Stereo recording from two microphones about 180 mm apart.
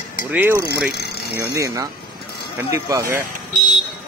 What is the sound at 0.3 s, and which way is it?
Speech, 10° right (ahead or behind).